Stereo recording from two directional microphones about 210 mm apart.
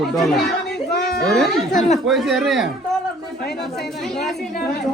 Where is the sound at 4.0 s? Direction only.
Centre (ahead or behind).